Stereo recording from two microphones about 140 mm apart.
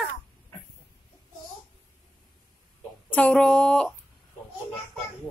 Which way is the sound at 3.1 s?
10° left (ahead or behind).